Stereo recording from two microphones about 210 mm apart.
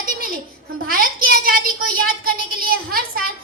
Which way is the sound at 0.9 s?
45° right (ahead or behind).